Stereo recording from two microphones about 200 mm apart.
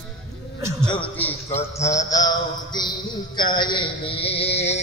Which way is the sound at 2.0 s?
20° left (ahead or behind).